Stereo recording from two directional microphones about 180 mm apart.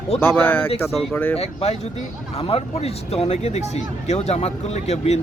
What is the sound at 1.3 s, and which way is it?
Speech, 35° left (ahead or behind).